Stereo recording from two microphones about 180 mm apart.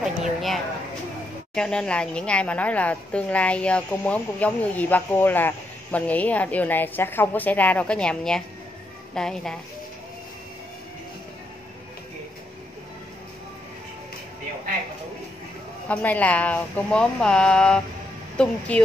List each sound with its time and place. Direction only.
0.0 s a sound: centre (ahead or behind)
1.5 s a woman's voice: 5° left (ahead or behind)
15.9 s speech: 10° left (ahead or behind)